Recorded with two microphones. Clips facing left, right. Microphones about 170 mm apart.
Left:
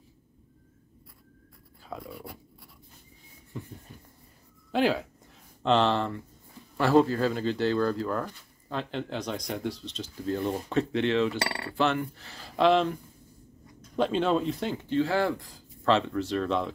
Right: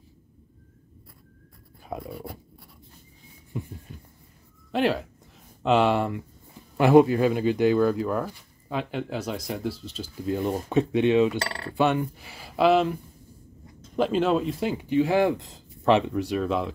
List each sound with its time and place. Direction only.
1.9 s writing: 25° right (ahead or behind)
3.5 s a sound: 15° right (ahead or behind)
4.7 s speech: centre (ahead or behind)